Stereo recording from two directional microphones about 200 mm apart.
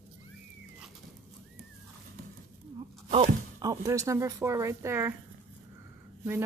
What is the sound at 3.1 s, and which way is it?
Speech, 25° right (ahead or behind).